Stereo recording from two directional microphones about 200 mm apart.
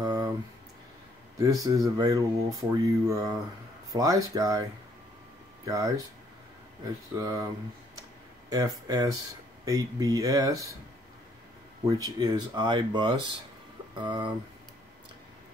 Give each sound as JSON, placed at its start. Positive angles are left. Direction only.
{"t": 0.0, "sound": "a sound", "side_deg": -20}
{"t": 1.4, "sound": "speech", "side_deg": -15}
{"t": 5.7, "sound": "speech", "side_deg": -15}
{"t": 8.5, "sound": "speech", "side_deg": -20}
{"t": 11.8, "sound": "speech", "side_deg": -15}